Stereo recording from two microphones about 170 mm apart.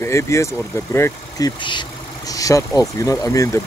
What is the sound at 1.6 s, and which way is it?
Speech, 30° left (ahead or behind).